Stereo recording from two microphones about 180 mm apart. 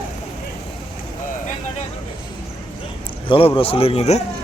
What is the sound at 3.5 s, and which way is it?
Speech, 30° left (ahead or behind).